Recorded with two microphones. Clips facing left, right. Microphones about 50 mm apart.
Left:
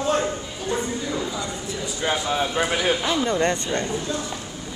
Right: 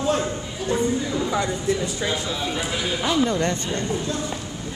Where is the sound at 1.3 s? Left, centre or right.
Right.